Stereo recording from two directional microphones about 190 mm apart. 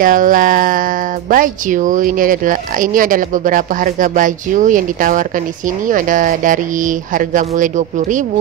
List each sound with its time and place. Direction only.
0.0 s speech: 45° right (ahead or behind)